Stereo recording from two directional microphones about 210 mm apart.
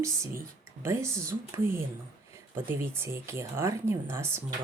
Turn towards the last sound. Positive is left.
turn(degrees=-10)  # may be behind; listen again after turning